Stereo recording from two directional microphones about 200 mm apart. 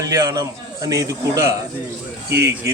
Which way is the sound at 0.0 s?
15° right (ahead or behind).